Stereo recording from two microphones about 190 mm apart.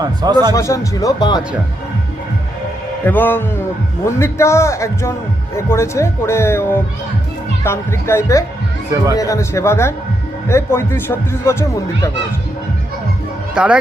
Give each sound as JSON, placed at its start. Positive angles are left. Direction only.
{"t": 0.0, "sound": "a man's voice", "side_deg": -20}
{"t": 0.5, "sound": "speech", "side_deg": 15}
{"t": 3.1, "sound": "speech", "side_deg": 10}
{"t": 13.5, "sound": "speech", "side_deg": -5}